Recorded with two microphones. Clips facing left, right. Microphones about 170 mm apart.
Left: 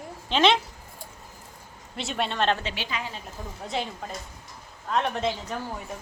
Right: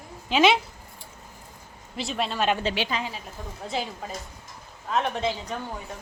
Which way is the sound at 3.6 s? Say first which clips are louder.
Even; centre (ahead or behind).